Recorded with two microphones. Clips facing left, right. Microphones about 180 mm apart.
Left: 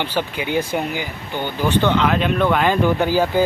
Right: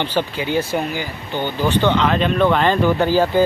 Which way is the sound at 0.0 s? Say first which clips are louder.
Right 2 dB; 15° left (ahead or behind).